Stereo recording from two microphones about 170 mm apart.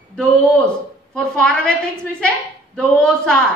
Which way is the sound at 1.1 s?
5° left (ahead or behind).